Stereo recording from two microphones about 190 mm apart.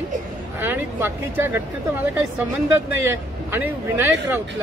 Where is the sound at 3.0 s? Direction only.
10° right (ahead or behind).